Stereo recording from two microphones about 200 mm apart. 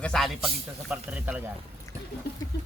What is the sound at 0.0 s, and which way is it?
A man's voice, centre (ahead or behind).